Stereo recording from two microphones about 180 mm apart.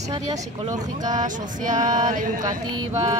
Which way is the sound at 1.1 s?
45° right (ahead or behind).